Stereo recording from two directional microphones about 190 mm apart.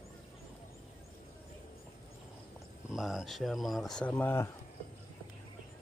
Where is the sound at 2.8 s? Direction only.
Centre (ahead or behind).